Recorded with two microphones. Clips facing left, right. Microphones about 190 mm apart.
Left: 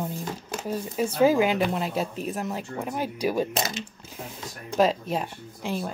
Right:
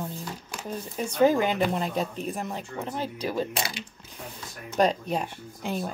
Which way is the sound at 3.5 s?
45° left (ahead or behind).